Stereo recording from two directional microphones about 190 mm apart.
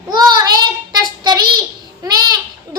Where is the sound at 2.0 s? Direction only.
20° right (ahead or behind).